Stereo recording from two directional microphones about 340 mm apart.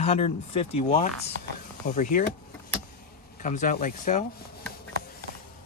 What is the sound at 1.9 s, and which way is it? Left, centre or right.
Speech, left.